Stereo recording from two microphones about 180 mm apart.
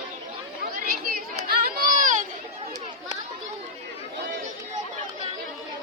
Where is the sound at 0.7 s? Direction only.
55° right (ahead or behind).